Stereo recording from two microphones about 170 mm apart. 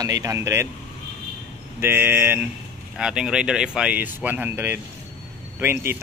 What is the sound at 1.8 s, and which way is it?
Speech, 15° right (ahead or behind).